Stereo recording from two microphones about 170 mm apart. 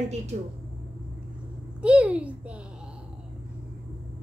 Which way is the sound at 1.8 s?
5° right (ahead or behind).